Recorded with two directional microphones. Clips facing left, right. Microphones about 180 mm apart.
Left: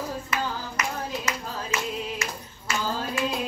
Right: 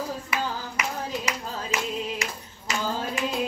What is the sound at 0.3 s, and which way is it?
Clapping, 15° right (ahead or behind).